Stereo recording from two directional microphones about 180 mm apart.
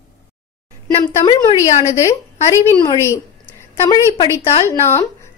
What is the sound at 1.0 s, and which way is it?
Speech, 25° left (ahead or behind).